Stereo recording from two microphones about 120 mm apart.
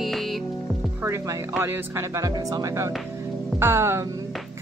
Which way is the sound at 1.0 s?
20° right (ahead or behind).